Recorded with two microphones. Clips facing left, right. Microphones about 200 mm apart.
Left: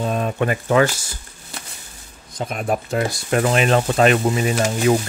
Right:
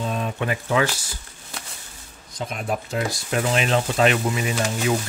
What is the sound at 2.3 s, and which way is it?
Speech, 50° left (ahead or behind).